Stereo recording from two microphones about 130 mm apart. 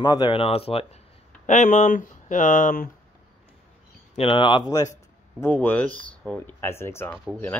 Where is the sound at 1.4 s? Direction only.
70° left (ahead or behind); by 2.9 s 90° left.